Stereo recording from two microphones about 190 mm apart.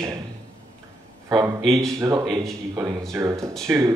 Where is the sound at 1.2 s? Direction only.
20° right (ahead or behind).